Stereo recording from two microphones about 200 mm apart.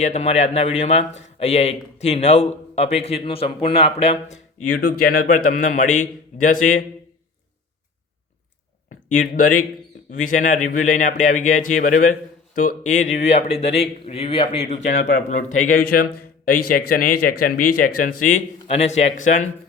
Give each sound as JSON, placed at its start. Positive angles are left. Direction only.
{"t": 0.0, "sound": "speech", "side_deg": 35}
{"t": 9.2, "sound": "speech", "side_deg": 45}